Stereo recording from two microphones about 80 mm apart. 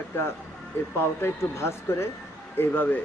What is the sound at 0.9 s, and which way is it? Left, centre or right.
Speech, left.